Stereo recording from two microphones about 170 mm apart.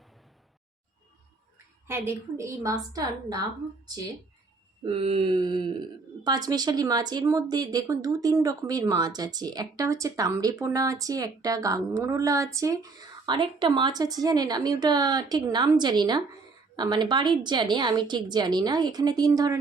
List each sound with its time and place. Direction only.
1.5 s speech: 15° right (ahead or behind)
4.9 s speech: 35° right (ahead or behind)